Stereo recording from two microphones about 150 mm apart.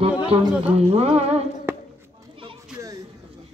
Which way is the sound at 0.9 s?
45° right (ahead or behind).